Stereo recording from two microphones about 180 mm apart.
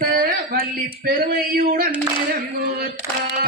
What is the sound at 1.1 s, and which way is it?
Speech, 55° right (ahead or behind).